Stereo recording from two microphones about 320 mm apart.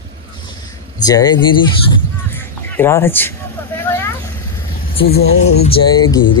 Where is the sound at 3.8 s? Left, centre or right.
Centre.